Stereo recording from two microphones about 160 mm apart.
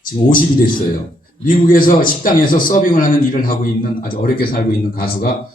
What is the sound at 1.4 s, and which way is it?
A man's voice, 60° left (ahead or behind).